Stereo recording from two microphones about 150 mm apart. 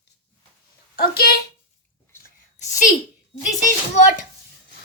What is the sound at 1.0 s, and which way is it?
Speech, 90° left.